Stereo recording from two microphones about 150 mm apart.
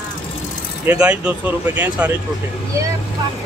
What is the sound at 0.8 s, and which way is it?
Speech, 5° right (ahead or behind).